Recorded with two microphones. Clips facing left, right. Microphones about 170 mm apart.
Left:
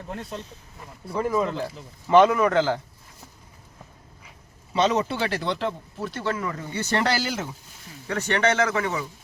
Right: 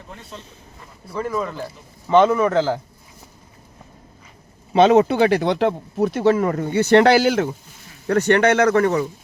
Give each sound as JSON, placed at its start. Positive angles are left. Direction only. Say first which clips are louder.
{"t": 1.1, "sound": "speech", "louder": "even", "side_deg": 20}
{"t": 2.0, "sound": "speech", "louder": "right 2 dB", "side_deg": 0}
{"t": 4.7, "sound": "speech", "louder": "right 9 dB", "side_deg": -55}
{"t": 6.5, "sound": "speech", "louder": "right 12 dB", "side_deg": -50}
{"t": 8.7, "sound": "a man's voice", "louder": "right 9 dB", "side_deg": -45}